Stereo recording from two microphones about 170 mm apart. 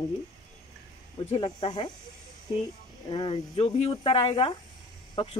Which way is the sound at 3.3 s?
35° left (ahead or behind).